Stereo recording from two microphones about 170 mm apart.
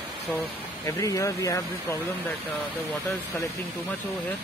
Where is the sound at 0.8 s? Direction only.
20° left (ahead or behind).